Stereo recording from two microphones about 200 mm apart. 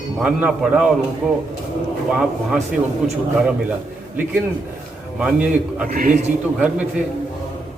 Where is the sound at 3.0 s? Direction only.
Centre (ahead or behind).